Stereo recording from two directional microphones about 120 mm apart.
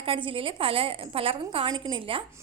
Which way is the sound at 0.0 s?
45° right (ahead or behind).